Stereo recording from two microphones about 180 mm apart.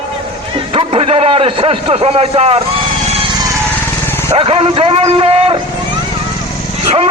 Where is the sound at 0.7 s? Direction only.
30° right (ahead or behind).